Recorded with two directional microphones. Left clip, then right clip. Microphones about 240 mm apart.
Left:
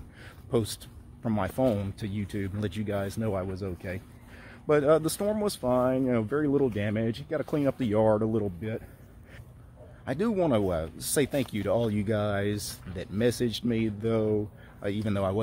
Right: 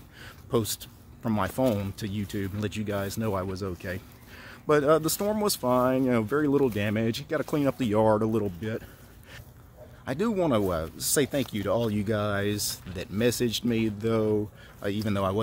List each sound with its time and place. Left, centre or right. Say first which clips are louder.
0.2 s speech: right 1 dB; centre
10.0 s speech: even; centre